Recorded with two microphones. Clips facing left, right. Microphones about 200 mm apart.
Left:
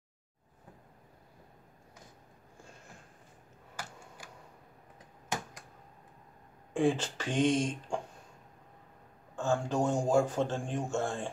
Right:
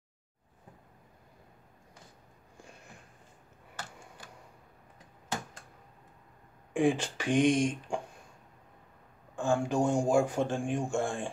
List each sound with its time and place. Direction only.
6.7 s speech: 15° right (ahead or behind)
9.3 s a man's voice: 15° right (ahead or behind)